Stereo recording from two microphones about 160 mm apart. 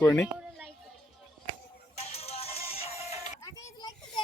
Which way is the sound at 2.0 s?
40° left (ahead or behind).